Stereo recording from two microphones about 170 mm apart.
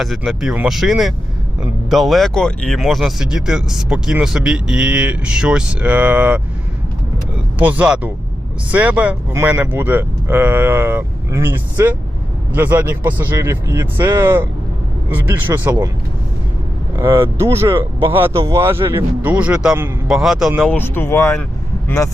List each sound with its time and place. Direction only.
0.0 s speech: centre (ahead or behind)
7.6 s speech: 10° right (ahead or behind)
17.0 s speech: 30° right (ahead or behind)
17.4 s speech: 15° right (ahead or behind)
17.7 s speech: 30° right (ahead or behind)
18.4 s speech: 15° right (ahead or behind)
20.7 s speech: 10° left (ahead or behind)